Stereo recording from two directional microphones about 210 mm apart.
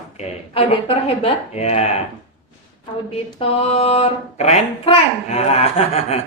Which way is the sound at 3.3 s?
25° left (ahead or behind).